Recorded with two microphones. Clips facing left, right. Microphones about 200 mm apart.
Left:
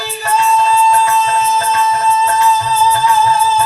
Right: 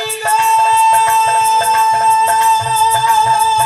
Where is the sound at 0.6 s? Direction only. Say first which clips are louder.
Left 1 dB; 30° right (ahead or behind).